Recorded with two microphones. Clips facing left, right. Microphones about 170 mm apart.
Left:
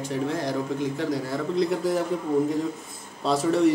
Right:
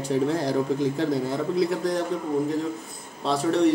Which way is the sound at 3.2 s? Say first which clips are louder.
Even; centre (ahead or behind).